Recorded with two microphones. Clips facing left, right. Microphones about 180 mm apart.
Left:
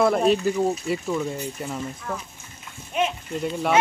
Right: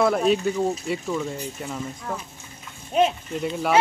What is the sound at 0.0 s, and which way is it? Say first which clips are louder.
Speech: left 1 dB; centre (ahead or behind).